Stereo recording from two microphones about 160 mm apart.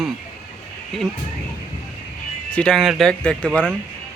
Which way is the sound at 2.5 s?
5° left (ahead or behind).